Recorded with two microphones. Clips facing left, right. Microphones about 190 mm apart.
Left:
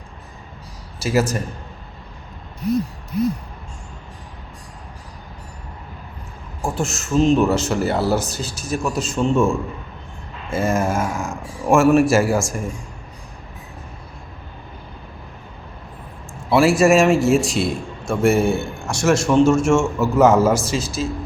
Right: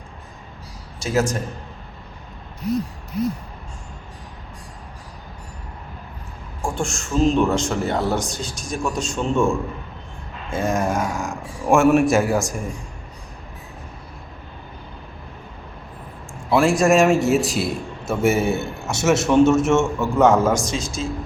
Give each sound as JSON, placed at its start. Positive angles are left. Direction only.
{"t": 0.9, "sound": "a man's voice", "side_deg": 5}
{"t": 6.6, "sound": "a man's voice", "side_deg": 5}
{"t": 16.5, "sound": "a man's voice", "side_deg": 5}